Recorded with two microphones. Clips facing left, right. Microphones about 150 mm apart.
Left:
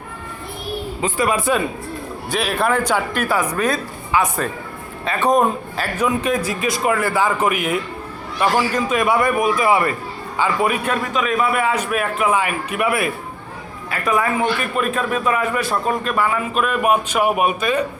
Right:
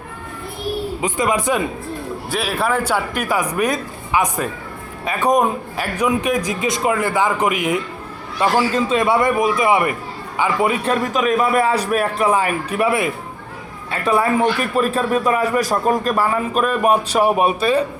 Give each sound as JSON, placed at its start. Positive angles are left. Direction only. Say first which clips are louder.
{"t": 1.0, "sound": "a man's voice", "louder": "even", "side_deg": -20}
{"t": 2.3, "sound": "a man's voice", "louder": "left 1 dB", "side_deg": -5}
{"t": 11.0, "sound": "a man's voice", "louder": "right 3 dB", "side_deg": -40}